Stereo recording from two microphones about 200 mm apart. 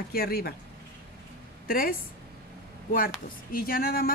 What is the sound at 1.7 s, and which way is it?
Speech, 45° left (ahead or behind).